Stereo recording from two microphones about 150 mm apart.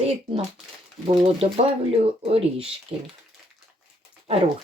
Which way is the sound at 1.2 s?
45° right (ahead or behind).